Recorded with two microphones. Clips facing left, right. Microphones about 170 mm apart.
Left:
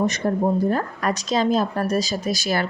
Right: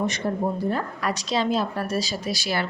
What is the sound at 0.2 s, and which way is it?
A woman's voice, 50° left (ahead or behind).